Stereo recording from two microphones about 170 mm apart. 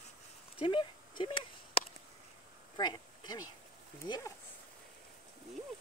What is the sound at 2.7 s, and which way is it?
Speech, 25° left (ahead or behind).